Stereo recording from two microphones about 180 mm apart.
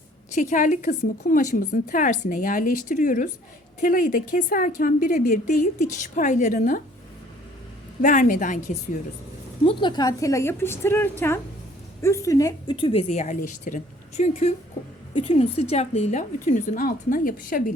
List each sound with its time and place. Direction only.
0.3 s a woman's voice: 45° left (ahead or behind)
8.0 s a woman's voice: 45° left (ahead or behind)
9.6 s a woman's voice: 25° left (ahead or behind); by 17.6 s 50° left (ahead or behind)